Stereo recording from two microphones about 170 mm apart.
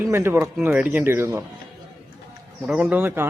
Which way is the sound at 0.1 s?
15° right (ahead or behind).